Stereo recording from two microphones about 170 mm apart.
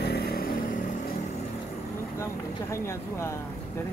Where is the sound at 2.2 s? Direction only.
15° left (ahead or behind).